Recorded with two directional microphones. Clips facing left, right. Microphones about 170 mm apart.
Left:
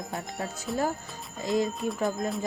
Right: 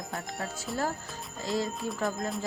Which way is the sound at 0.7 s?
Centre (ahead or behind).